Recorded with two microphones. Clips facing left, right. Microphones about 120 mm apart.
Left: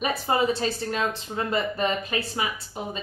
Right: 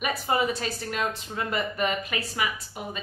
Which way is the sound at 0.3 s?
30° left (ahead or behind).